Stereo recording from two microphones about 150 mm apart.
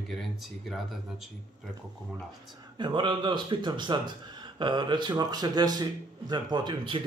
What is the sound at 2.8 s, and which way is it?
A man's voice, 30° right (ahead or behind).